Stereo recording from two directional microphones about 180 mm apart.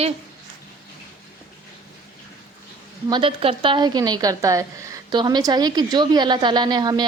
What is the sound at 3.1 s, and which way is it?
A woman's voice, 30° right (ahead or behind).